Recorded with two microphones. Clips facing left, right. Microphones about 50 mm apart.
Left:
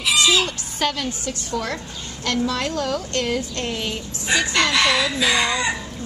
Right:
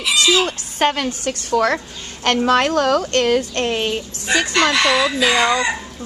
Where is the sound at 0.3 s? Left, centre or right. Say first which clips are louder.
Right 3 dB; right.